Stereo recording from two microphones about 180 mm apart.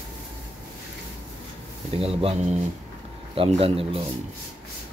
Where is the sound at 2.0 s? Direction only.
35° right (ahead or behind).